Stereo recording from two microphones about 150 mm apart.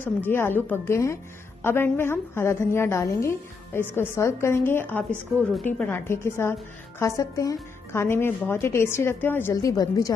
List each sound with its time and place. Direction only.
0.0 s a woman's voice: 15° left (ahead or behind)